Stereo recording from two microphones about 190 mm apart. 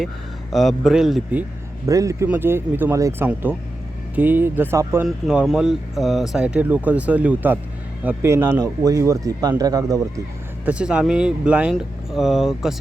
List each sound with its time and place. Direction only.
0.5 s speech: centre (ahead or behind)
1.9 s a man's voice: 15° right (ahead or behind)
5.0 s a man's voice: centre (ahead or behind); by 10.0 s 20° right (ahead or behind)
10.7 s speech: 5° right (ahead or behind)